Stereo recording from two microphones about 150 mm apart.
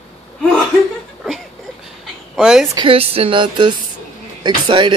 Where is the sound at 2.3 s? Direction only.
5° right (ahead or behind).